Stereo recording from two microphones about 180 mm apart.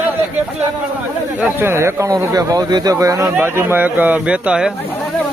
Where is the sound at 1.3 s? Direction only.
15° right (ahead or behind).